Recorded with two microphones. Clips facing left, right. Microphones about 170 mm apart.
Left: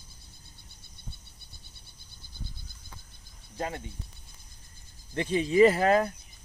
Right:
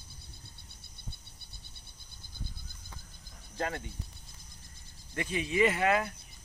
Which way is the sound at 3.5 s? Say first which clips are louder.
Left 1 dB; 20° left (ahead or behind).